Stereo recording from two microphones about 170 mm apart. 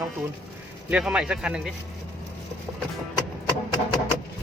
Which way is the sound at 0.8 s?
5° right (ahead or behind).